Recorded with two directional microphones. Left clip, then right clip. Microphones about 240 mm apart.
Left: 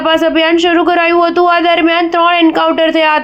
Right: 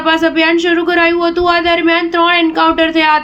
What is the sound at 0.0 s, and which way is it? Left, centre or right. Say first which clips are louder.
A man's voice: left 1 dB; left.